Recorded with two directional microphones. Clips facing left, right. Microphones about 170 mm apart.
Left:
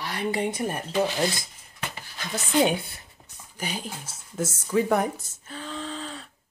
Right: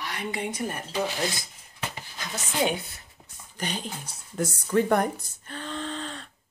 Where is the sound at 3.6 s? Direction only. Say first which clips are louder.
Even; 5° left (ahead or behind).